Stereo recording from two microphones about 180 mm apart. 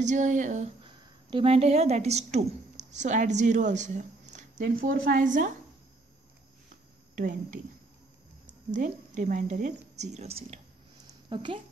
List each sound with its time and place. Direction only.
0.0 s a woman's voice: 45° right (ahead or behind)
0.8 s a woman's voice: 30° right (ahead or behind); by 5.5 s 45° right (ahead or behind)
7.2 s a woman's voice: 45° right (ahead or behind)
8.7 s a woman's voice: 45° right (ahead or behind); by 11.6 s 30° right (ahead or behind)